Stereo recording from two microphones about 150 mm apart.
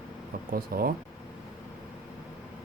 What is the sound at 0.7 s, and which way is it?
Speech, 75° right (ahead or behind).